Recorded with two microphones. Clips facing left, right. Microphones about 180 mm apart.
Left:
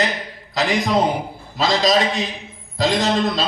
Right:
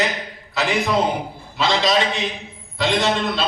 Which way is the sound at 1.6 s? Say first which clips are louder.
Left 2 dB; 40° left (ahead or behind).